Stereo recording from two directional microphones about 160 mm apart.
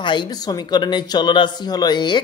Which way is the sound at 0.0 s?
30° left (ahead or behind).